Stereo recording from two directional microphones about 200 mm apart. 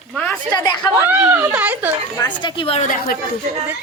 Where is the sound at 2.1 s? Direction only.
20° left (ahead or behind).